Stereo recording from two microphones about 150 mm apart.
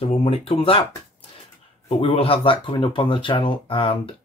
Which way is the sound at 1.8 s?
40° left (ahead or behind).